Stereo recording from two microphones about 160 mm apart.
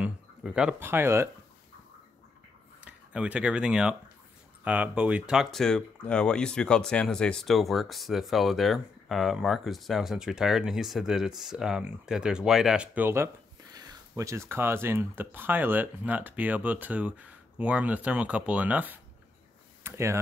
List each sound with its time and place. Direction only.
0.0 s speech: 5° right (ahead or behind)
2.8 s speech: 5° right (ahead or behind)
19.8 s a sound: 15° right (ahead or behind)